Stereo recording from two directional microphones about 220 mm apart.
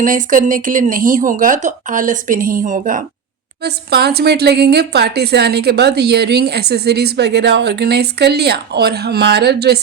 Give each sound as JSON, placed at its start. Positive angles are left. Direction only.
{"t": 0.0, "sound": "speech", "side_deg": -35}
{"t": 3.6, "sound": "a woman's voice", "side_deg": -45}